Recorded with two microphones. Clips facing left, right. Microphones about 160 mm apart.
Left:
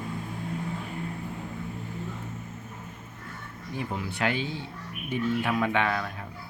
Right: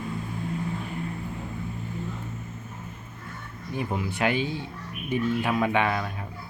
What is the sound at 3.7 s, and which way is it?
Speech, 15° right (ahead or behind).